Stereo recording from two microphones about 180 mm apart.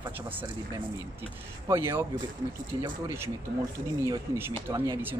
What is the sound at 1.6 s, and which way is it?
Speech, 15° right (ahead or behind).